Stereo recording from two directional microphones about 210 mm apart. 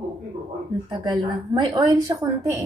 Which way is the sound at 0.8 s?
20° right (ahead or behind).